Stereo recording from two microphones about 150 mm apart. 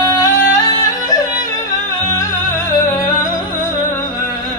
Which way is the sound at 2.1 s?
20° left (ahead or behind).